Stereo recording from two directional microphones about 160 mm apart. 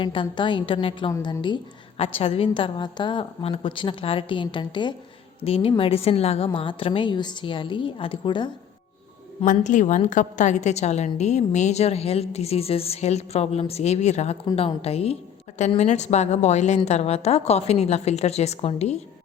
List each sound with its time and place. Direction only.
0.0 s a woman's voice: 30° left (ahead or behind)
9.4 s a woman's voice: 50° left (ahead or behind)